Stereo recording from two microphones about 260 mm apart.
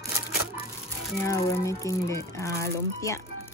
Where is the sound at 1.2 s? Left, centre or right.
Centre.